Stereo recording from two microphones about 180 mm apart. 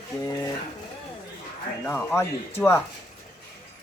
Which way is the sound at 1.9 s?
5° left (ahead or behind).